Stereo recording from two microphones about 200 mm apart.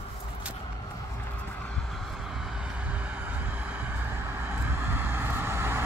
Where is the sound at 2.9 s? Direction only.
5° right (ahead or behind).